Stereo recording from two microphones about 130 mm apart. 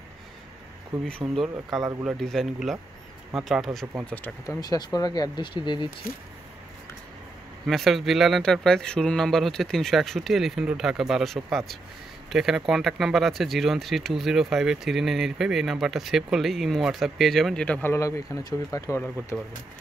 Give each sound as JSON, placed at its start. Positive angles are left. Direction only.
{"t": 1.2, "sound": "speech", "side_deg": -20}
{"t": 2.0, "sound": "speech", "side_deg": 5}
{"t": 4.0, "sound": "speech", "side_deg": 10}
{"t": 4.5, "sound": "speech", "side_deg": 30}
{"t": 7.6, "sound": "speech", "side_deg": 0}
{"t": 17.8, "sound": "speech", "side_deg": 25}